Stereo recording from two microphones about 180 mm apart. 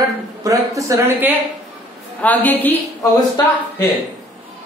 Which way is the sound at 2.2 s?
10° left (ahead or behind).